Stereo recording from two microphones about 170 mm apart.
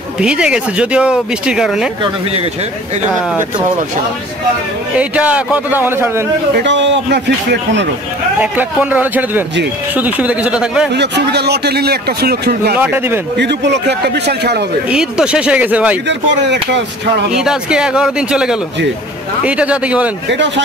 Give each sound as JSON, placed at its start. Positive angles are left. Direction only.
{"t": 0.2, "sound": "speech", "side_deg": -5}
{"t": 4.9, "sound": "a man's voice", "side_deg": -5}
{"t": 6.5, "sound": "speech", "side_deg": -90}
{"t": 8.4, "sound": "a man's voice", "side_deg": -10}
{"t": 10.9, "sound": "speech", "side_deg": -85}
{"t": 12.7, "sound": "a man's voice", "side_deg": -10}
{"t": 13.4, "sound": "a man's voice", "side_deg": -85}
{"t": 14.9, "sound": "a man's voice", "side_deg": -5}
{"t": 16.1, "sound": "speech", "side_deg": -90}
{"t": 17.3, "sound": "a man's voice", "side_deg": -5}
{"t": 20.2, "sound": "speech", "side_deg": -90}